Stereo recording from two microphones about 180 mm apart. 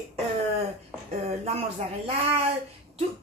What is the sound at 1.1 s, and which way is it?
Speech, 35° right (ahead or behind).